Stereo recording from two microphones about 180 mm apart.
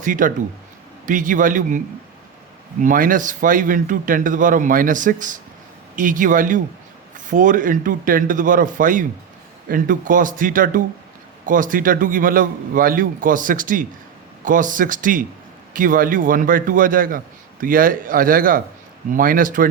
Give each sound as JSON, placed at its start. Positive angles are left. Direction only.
{"t": 0.0, "sound": "a man's voice", "side_deg": -45}
{"t": 2.8, "sound": "a man's voice", "side_deg": -45}